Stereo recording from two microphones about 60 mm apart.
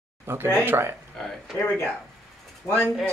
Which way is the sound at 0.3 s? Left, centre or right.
Right.